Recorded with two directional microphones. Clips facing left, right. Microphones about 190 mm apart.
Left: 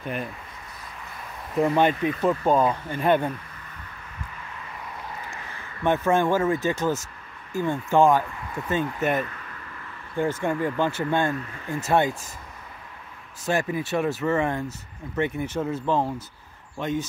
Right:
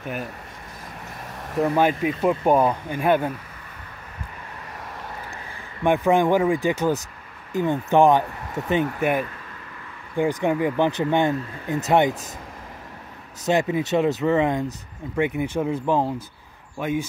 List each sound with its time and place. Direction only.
0.0 s speech: 5° right (ahead or behind)
1.6 s speech: 5° right (ahead or behind)
5.8 s speech: 15° right (ahead or behind)
13.5 s speech: 20° right (ahead or behind)